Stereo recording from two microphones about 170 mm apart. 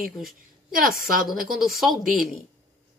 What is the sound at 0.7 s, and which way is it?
Speech, 55° right (ahead or behind).